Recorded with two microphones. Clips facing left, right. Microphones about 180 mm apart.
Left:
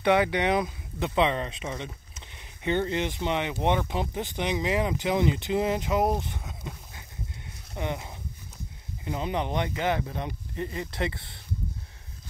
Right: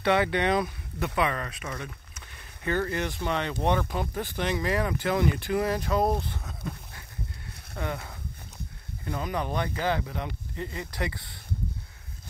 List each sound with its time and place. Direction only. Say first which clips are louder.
0.0 s speech: left 1 dB; 15° left (ahead or behind)